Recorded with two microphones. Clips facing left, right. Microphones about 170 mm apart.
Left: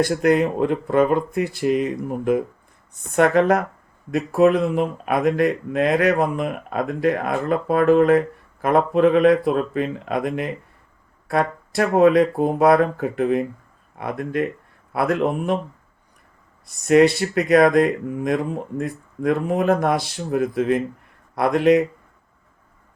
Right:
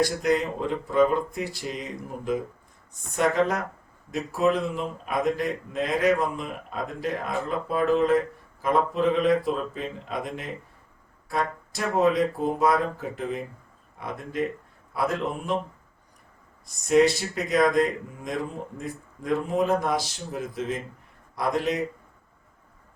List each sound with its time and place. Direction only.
0.0 s speech: 60° left (ahead or behind)
16.6 s speech: 65° left (ahead or behind)